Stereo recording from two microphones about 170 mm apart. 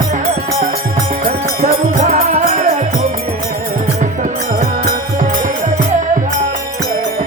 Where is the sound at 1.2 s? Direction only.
45° right (ahead or behind).